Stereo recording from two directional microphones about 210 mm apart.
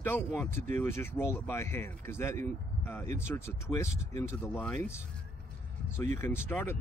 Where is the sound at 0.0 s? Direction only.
10° left (ahead or behind).